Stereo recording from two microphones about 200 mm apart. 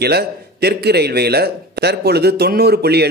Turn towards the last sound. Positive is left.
turn(degrees=-55)  # may be behind; listen again after turning